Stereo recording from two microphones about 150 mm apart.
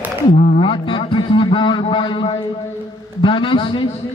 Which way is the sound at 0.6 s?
35° left (ahead or behind).